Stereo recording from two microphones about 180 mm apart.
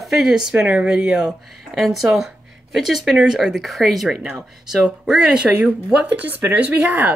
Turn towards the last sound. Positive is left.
turn(degrees=-10)  # may be behind; listen again after turning